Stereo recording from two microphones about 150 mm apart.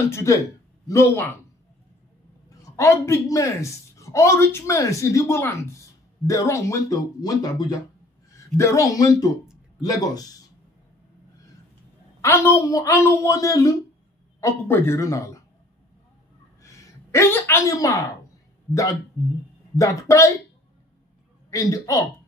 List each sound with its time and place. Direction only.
0.1 s a woman's voice: 20° left (ahead or behind)
2.6 s a woman's voice: 20° left (ahead or behind)
12.2 s a woman's voice: 20° left (ahead or behind)
16.6 s a sound: 20° left (ahead or behind)
19.8 s a woman's voice: 20° left (ahead or behind)
21.5 s a woman's voice: 25° left (ahead or behind)